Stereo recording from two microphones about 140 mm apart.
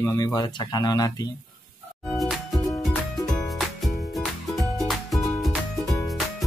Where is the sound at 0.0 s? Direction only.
25° left (ahead or behind).